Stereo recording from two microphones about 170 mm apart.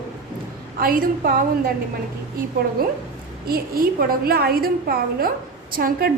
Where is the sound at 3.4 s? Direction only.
60° right (ahead or behind).